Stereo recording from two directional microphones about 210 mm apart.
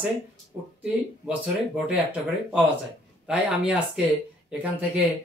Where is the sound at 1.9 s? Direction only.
5° right (ahead or behind).